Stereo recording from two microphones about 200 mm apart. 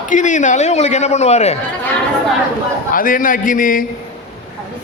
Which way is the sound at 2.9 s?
45° left (ahead or behind).